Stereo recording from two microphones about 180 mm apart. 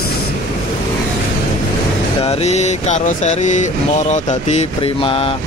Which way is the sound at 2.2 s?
40° left (ahead or behind).